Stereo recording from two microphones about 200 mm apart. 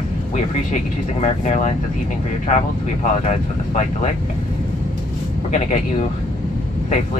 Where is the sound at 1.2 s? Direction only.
35° left (ahead or behind).